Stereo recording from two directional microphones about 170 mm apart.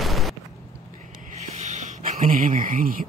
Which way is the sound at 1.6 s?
45° right (ahead or behind).